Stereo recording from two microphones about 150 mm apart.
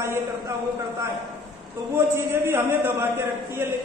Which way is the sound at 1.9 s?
15° right (ahead or behind).